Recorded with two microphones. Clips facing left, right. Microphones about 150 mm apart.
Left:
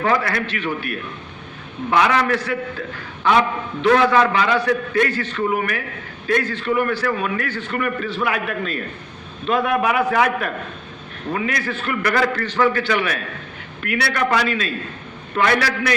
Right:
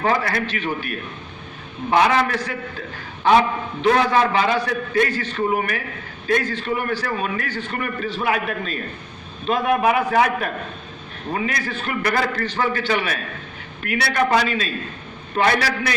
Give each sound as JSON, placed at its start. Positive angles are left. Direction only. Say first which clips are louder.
{"t": 0.0, "sound": "a man's voice", "louder": "left 1 dB", "side_deg": -30}
{"t": 3.8, "sound": "a man's voice", "louder": "left 2 dB", "side_deg": -30}